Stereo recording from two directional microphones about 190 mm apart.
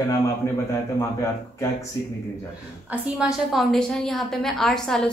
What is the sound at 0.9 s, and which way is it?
Speech, 15° left (ahead or behind).